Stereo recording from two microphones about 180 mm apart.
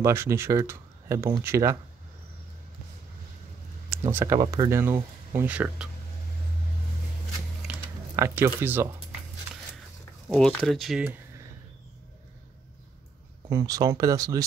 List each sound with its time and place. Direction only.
0.0 s speech: 15° right (ahead or behind)
4.0 s speech: 15° right (ahead or behind)
8.2 s speech: 10° right (ahead or behind)
10.2 s speech: centre (ahead or behind)
13.5 s speech: 15° right (ahead or behind)